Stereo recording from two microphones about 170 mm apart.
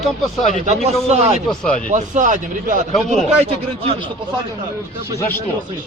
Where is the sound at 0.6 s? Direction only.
40° right (ahead or behind).